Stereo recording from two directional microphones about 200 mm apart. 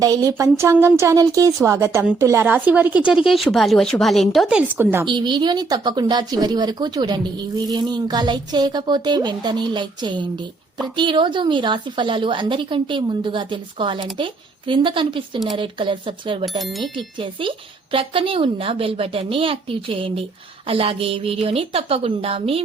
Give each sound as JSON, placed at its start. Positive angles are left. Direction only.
{"t": 0.0, "sound": "speech", "side_deg": -20}
{"t": 5.0, "sound": "speech", "side_deg": -20}
{"t": 16.6, "sound": "speech", "side_deg": 0}
{"t": 17.9, "sound": "speech", "side_deg": -25}